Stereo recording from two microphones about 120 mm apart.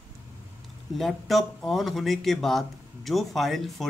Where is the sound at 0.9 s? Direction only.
Centre (ahead or behind).